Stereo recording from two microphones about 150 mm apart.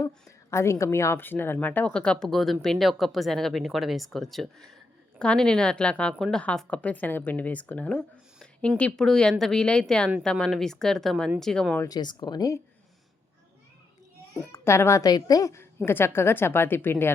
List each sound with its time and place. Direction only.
0.0 s a woman's voice: 20° left (ahead or behind); by 11.8 s 5° left (ahead or behind)
11.8 s speech: 25° left (ahead or behind)
14.5 s a woman's voice: 15° left (ahead or behind)